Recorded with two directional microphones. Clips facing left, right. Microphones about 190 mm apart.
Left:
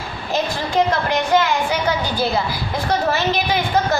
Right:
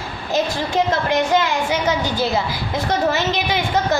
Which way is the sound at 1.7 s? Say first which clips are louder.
Right 1 dB; 20° right (ahead or behind).